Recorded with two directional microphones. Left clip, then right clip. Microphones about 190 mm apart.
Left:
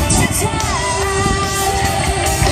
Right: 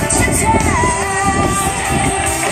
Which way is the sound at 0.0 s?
60° left (ahead or behind).